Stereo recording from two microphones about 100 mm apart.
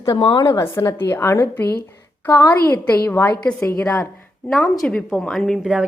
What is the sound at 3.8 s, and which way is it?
A woman's voice, 15° left (ahead or behind).